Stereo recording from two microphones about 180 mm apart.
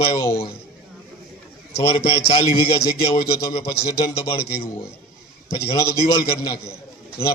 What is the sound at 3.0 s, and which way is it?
A man's voice, 25° left (ahead or behind).